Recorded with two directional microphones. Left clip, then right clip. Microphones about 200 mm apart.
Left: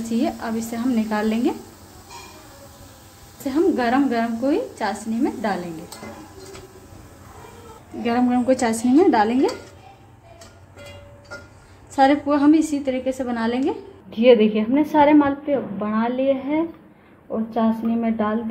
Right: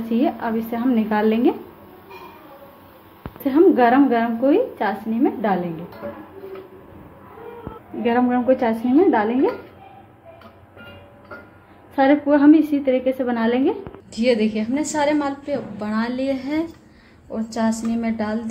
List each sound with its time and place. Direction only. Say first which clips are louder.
0.1 s a woman's voice: right 3 dB; centre (ahead or behind)
3.4 s a woman's voice: right 6 dB; 5° right (ahead or behind)
8.0 s a woman's voice: right 2 dB; 10° left (ahead or behind)
11.9 s a woman's voice: right 1 dB; 5° left (ahead or behind); by 18.4 s 10° right (ahead or behind)